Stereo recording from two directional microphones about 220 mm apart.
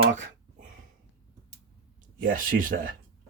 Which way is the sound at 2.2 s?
40° right (ahead or behind).